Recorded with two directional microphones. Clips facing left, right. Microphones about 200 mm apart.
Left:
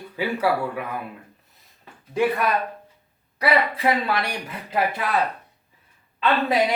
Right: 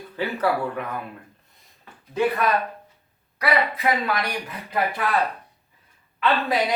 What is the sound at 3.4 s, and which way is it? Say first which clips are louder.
Speech: left 2 dB; 30° left (ahead or behind).